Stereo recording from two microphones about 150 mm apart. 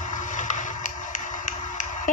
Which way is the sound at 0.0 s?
60° left (ahead or behind).